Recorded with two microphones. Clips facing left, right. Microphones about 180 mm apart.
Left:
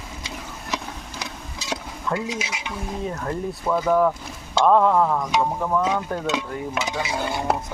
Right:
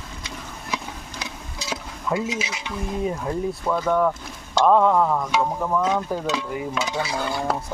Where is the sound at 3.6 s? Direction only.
5° left (ahead or behind).